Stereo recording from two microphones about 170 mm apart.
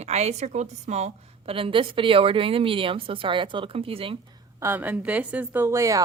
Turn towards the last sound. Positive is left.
turn(degrees=-20)  # may be behind; listen again after turning